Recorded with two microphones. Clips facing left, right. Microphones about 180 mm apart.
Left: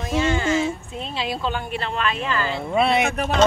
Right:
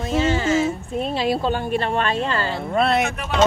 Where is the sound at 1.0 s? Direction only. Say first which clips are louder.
Right 5 dB; 50° right (ahead or behind); by 2.4 s 35° right (ahead or behind).